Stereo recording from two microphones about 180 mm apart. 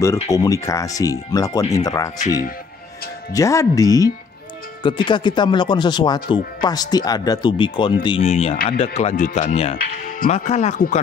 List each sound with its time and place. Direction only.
0.0 s speech: 15° left (ahead or behind)
3.3 s speech: 20° left (ahead or behind); by 9.8 s 35° left (ahead or behind)
9.9 s speech: 50° left (ahead or behind)